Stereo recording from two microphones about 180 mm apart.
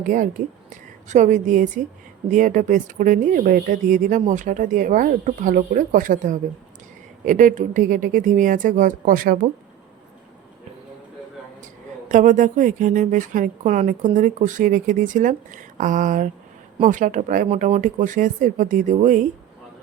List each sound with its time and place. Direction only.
0.0 s a woman's voice: 45° right (ahead or behind)
12.1 s speech: 45° right (ahead or behind)